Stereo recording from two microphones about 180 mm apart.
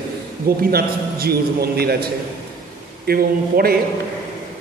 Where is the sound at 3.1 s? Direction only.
55° right (ahead or behind).